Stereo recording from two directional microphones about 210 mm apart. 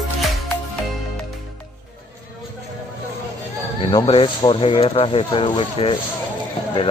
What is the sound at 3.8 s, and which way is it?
Speech, 25° left (ahead or behind).